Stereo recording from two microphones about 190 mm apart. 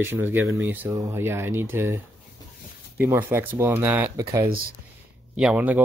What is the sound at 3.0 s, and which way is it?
Speech, 15° right (ahead or behind).